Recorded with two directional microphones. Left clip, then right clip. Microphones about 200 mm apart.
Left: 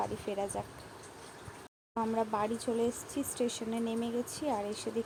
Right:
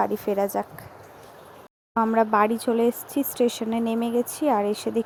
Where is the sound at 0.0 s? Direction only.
35° right (ahead or behind).